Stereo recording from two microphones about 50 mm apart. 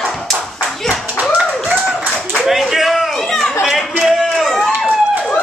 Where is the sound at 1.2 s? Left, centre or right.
Right.